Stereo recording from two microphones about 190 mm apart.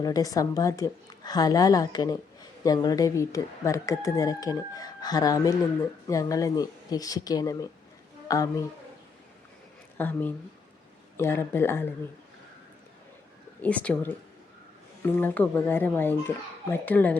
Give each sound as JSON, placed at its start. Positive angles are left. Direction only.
{"t": 0.0, "sound": "speech", "side_deg": 20}
{"t": 10.0, "sound": "a child's voice", "side_deg": 10}
{"t": 13.6, "sound": "a child's voice", "side_deg": 5}